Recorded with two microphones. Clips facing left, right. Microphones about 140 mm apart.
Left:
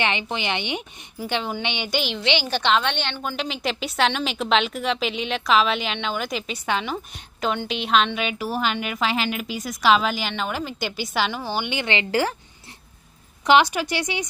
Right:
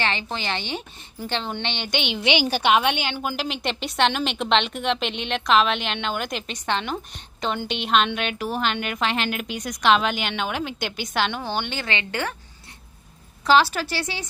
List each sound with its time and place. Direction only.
0.0 s a woman's voice: 15° left (ahead or behind)
2.0 s a woman's voice: centre (ahead or behind)
2.2 s a woman's voice: 15° right (ahead or behind); by 11.8 s 10° left (ahead or behind)
11.8 s speech: 25° left (ahead or behind)
13.5 s a woman's voice: 15° left (ahead or behind)